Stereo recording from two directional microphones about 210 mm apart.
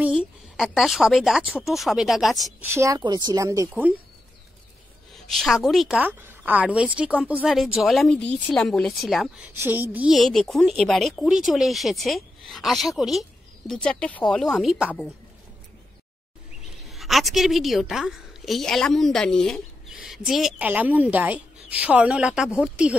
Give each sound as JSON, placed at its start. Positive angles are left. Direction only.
{"t": 0.0, "sound": "a woman's voice", "side_deg": -5}
{"t": 2.7, "sound": "speech", "side_deg": -15}
{"t": 5.1, "sound": "a woman's voice", "side_deg": 0}
{"t": 16.9, "sound": "a woman's voice", "side_deg": 0}